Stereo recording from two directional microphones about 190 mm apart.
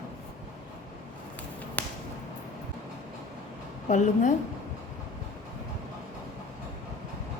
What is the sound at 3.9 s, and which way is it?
Speech, 40° left (ahead or behind).